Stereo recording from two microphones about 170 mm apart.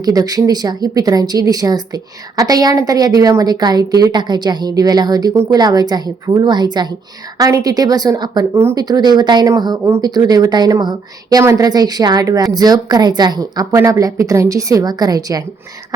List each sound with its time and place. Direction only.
0.0 s speech: 20° right (ahead or behind)